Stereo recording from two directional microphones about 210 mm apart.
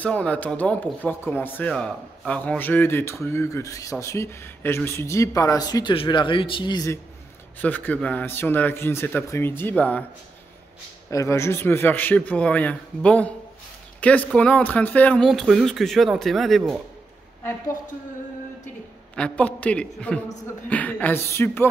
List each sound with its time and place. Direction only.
0.0 s speech: 5° left (ahead or behind)
7.6 s speech: 10° left (ahead or behind)
11.1 s speech: 15° left (ahead or behind)
19.1 s speech: 5° left (ahead or behind)